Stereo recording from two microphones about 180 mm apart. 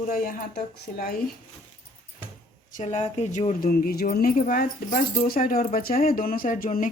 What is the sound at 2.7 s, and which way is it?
Speech, 40° left (ahead or behind).